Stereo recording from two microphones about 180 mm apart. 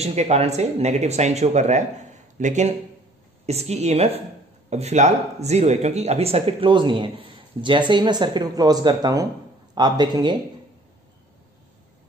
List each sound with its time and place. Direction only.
0.0 s speech: 35° right (ahead or behind)